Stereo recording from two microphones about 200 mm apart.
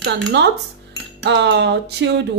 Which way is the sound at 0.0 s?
60° right (ahead or behind).